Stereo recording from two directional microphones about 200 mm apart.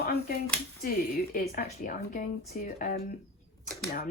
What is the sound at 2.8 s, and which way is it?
Speech, 45° left (ahead or behind).